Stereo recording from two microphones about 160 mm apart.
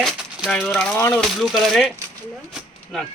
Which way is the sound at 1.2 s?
Centre (ahead or behind).